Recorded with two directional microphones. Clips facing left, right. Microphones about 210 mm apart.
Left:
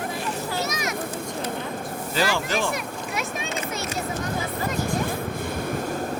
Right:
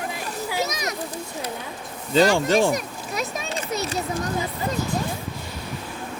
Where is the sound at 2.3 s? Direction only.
35° right (ahead or behind).